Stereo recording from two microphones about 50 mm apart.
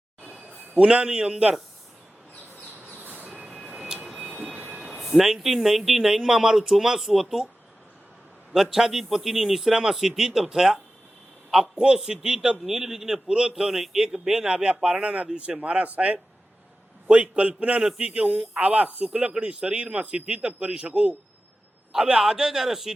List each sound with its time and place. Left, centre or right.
0.7 s speech: right
3.0 s vehicle: right
3.7 s a sound: centre
4.2 s train: centre
4.9 s speech: centre
8.5 s speech: centre
21.9 s speech: centre